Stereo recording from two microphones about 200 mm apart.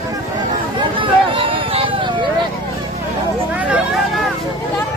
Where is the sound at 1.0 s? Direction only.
25° right (ahead or behind).